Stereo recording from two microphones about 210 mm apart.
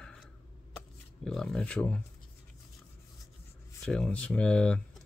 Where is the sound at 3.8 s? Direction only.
5° left (ahead or behind).